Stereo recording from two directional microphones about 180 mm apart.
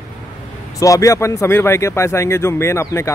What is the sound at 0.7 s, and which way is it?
Speech, 20° left (ahead or behind).